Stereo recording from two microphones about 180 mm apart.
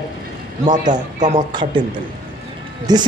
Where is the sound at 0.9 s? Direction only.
45° right (ahead or behind).